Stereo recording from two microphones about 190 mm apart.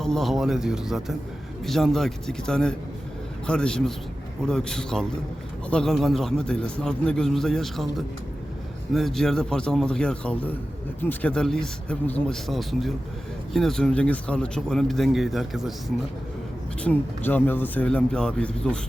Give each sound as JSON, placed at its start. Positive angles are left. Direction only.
{"t": 0.0, "sound": "a man's voice", "side_deg": 0}
{"t": 16.8, "sound": "a man's voice", "side_deg": 10}